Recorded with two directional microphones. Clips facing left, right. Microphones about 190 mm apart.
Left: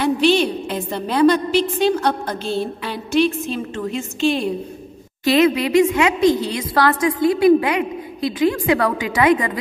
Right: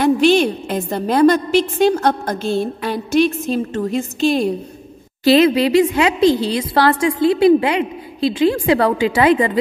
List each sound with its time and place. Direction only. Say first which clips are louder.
0.0 s a woman's voice: right 3 dB; 50° right (ahead or behind)
5.2 s a woman's voice: right 3 dB; 30° right (ahead or behind)